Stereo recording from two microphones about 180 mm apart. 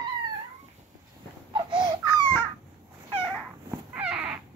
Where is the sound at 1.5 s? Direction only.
25° right (ahead or behind).